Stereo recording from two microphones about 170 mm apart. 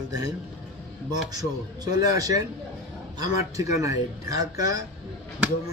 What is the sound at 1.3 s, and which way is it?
Speech, 20° right (ahead or behind).